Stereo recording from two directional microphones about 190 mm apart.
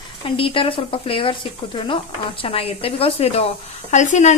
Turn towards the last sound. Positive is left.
turn(degrees=40)  # may be behind; listen again after turning